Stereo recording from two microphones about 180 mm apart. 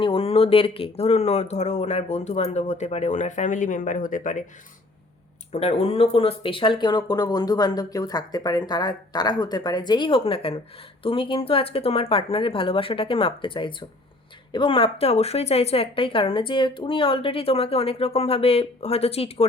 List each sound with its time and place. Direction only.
0.0 s speech: 30° left (ahead or behind); by 4.4 s 45° left (ahead or behind)
5.5 s speech: 35° left (ahead or behind)